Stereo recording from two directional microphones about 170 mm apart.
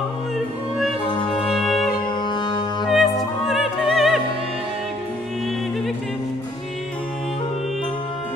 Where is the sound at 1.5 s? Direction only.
Centre (ahead or behind).